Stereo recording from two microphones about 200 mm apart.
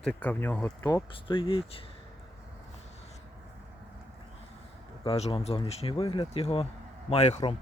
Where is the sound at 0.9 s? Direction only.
25° left (ahead or behind).